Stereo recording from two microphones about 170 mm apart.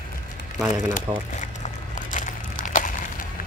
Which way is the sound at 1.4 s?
50° left (ahead or behind).